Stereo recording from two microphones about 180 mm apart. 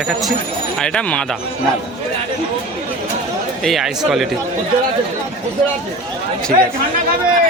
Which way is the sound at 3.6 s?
Centre (ahead or behind).